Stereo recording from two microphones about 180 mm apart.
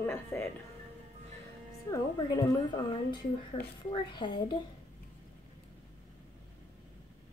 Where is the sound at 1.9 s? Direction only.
20° left (ahead or behind).